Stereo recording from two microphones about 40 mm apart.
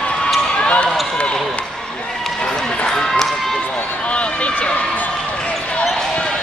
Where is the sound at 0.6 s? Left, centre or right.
Left.